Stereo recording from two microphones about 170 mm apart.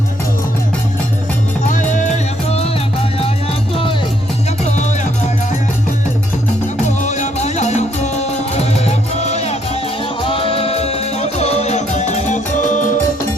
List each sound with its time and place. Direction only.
1.6 s music: 45° left (ahead or behind)
6.8 s music: 45° left (ahead or behind)